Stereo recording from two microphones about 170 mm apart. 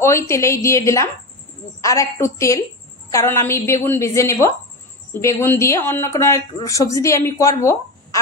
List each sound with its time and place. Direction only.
0.0 s speech: 15° left (ahead or behind)